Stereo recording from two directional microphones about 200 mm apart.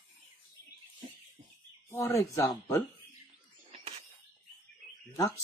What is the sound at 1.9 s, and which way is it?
Speech, 15° left (ahead or behind).